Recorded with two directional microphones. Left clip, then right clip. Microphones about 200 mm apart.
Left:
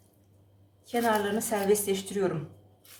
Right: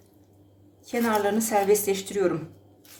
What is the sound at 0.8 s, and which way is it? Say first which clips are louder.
A woman's voice: right 2 dB; 35° right (ahead or behind).